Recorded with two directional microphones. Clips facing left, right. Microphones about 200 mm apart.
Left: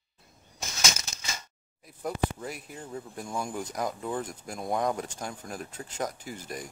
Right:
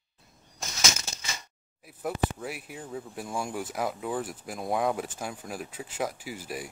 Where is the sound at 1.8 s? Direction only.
5° right (ahead or behind).